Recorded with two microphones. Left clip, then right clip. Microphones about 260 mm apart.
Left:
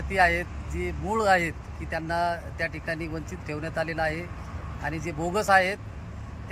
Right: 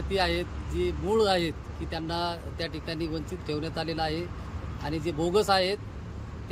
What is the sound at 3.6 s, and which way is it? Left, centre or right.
Speech, centre.